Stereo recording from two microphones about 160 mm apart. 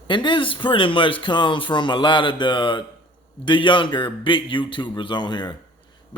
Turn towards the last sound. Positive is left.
turn(degrees=30)  # may be behind; listen again after turning